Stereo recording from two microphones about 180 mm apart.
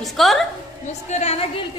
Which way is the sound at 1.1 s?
35° left (ahead or behind).